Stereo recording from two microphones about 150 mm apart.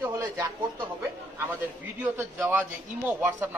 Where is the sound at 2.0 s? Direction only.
15° right (ahead or behind).